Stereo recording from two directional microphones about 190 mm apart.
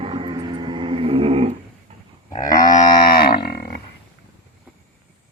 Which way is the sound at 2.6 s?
45° left (ahead or behind).